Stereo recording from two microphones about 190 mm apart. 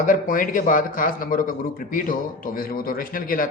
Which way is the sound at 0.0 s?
45° left (ahead or behind).